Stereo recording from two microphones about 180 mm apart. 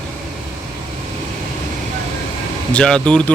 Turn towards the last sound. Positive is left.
turn(degrees=5)  # may be behind; listen again after turning